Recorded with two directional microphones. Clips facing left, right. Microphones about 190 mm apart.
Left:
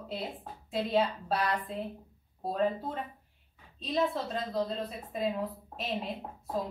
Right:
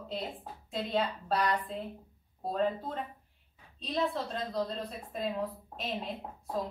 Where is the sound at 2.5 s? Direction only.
5° left (ahead or behind).